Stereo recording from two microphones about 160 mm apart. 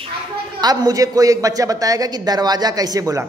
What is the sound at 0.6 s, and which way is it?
Speech, 25° right (ahead or behind).